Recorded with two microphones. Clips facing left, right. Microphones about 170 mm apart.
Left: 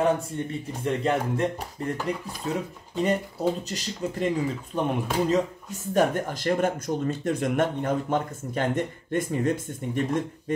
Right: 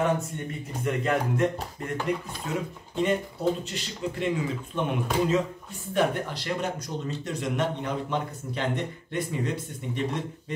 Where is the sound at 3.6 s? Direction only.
40° left (ahead or behind).